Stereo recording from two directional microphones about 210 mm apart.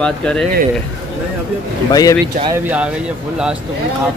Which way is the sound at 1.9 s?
15° left (ahead or behind).